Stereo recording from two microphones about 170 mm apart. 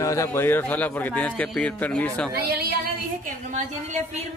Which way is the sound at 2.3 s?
65° right (ahead or behind).